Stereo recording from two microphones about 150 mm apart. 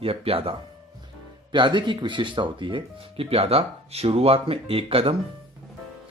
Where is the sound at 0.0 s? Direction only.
40° right (ahead or behind).